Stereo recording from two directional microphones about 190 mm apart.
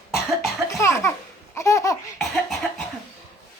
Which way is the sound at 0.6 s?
15° left (ahead or behind).